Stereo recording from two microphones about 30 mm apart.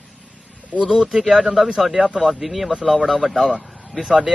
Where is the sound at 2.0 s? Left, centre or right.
Right.